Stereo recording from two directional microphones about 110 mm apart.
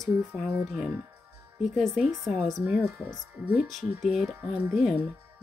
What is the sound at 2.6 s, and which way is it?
Speech, 15° right (ahead or behind).